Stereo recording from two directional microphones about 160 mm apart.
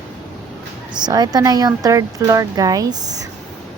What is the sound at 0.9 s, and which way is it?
Speech, 25° right (ahead or behind).